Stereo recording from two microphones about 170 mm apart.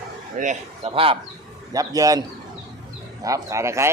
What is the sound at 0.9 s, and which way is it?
Speech, 30° right (ahead or behind).